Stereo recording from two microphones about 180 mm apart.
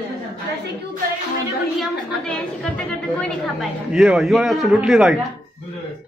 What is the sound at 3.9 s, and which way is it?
A man's voice, centre (ahead or behind).